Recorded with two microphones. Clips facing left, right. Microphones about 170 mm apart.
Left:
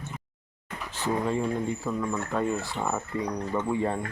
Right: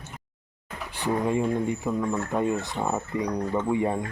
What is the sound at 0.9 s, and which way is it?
Speech, 15° right (ahead or behind).